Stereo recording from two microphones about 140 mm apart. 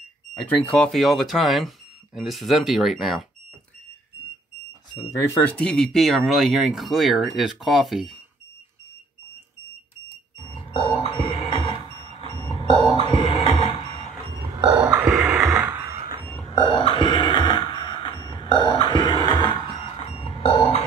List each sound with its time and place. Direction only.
0.3 s speech: 5° left (ahead or behind)
5.5 s speech: 5° left (ahead or behind)
10.4 s a sound: 35° left (ahead or behind)
12.4 s cough: 35° left (ahead or behind)
12.9 s music: 35° left (ahead or behind)
14.7 s grunt: 10° right (ahead or behind)
16.5 s a sound: 35° left (ahead or behind)